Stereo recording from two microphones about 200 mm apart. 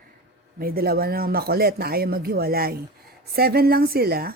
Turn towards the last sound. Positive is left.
turn(degrees=-50)  # may be behind; listen again after turning